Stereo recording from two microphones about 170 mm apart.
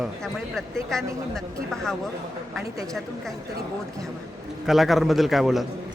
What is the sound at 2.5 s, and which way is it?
Speech, 20° right (ahead or behind).